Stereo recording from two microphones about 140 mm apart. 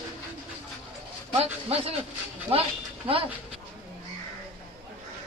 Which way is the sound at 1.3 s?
45° right (ahead or behind).